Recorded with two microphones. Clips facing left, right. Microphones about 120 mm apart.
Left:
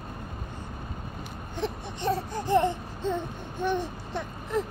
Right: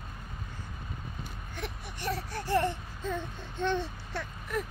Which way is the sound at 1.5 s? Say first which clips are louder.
Left 9 dB; 25° left (ahead or behind).